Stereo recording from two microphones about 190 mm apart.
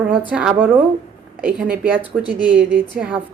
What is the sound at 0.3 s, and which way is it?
A woman's voice, 5° right (ahead or behind).